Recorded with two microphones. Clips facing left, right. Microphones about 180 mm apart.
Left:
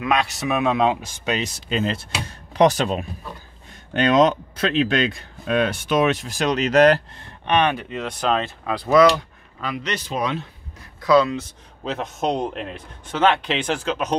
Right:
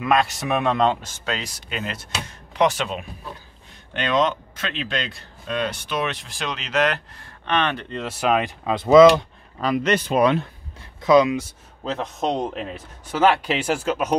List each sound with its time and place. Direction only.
0.0 s speech: centre (ahead or behind); by 7.0 s 40° left (ahead or behind)
7.2 s speech: 15° left (ahead or behind)
8.0 s a man's voice: 5° right (ahead or behind)
9.6 s a man's voice: 40° right (ahead or behind)
9.9 s speech: 55° right (ahead or behind)
11.0 s speech: 20° right (ahead or behind)
11.8 s a man's voice: centre (ahead or behind)